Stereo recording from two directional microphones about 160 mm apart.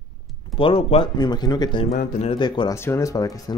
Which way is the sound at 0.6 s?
35° left (ahead or behind).